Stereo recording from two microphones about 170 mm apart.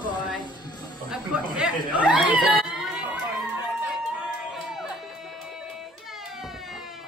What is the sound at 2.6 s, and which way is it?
Crowd, 5° right (ahead or behind).